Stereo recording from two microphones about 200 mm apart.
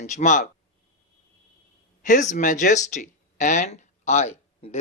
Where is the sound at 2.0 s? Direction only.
40° left (ahead or behind).